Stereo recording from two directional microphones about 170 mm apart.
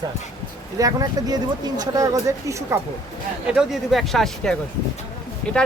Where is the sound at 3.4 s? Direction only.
5° right (ahead or behind).